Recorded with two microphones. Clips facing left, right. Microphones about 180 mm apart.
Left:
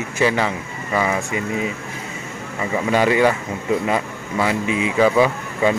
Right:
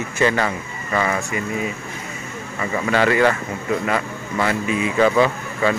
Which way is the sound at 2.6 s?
15° left (ahead or behind).